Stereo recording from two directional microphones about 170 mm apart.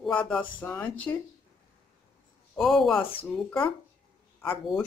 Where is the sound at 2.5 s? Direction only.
Centre (ahead or behind).